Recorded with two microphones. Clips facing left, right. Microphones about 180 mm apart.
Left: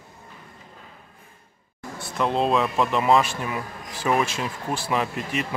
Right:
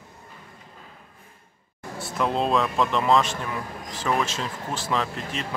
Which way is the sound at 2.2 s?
Centre (ahead or behind).